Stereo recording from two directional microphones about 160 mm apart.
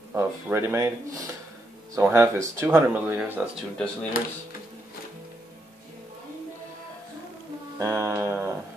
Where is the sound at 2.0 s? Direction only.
15° right (ahead or behind).